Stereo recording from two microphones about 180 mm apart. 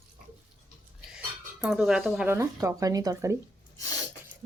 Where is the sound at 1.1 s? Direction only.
5° right (ahead or behind).